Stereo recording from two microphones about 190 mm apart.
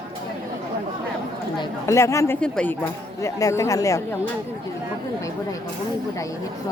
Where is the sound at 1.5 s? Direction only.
15° left (ahead or behind).